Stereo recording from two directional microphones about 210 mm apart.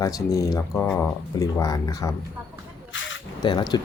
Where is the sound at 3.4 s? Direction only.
20° left (ahead or behind).